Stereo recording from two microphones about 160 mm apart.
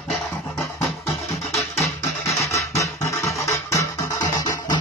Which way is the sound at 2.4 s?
20° left (ahead or behind).